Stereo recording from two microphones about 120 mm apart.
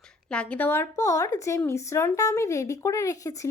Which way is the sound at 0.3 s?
10° left (ahead or behind).